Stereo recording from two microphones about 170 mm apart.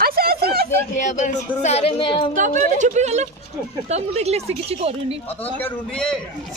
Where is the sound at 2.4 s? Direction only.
50° right (ahead or behind).